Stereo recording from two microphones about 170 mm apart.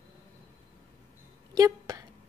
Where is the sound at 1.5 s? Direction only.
20° right (ahead or behind).